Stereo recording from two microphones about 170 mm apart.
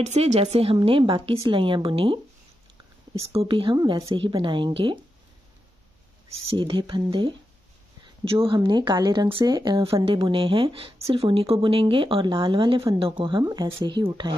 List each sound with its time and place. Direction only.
0.0 s speech: 40° right (ahead or behind)
3.3 s speech: 35° right (ahead or behind)
6.3 s speech: 30° right (ahead or behind)